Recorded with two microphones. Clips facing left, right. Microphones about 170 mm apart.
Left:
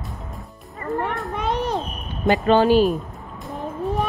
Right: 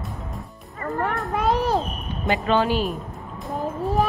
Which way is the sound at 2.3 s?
40° left (ahead or behind).